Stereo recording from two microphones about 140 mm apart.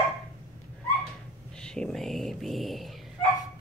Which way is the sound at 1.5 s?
5° left (ahead or behind).